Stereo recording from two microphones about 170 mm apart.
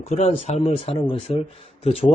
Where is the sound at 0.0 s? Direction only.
45° left (ahead or behind).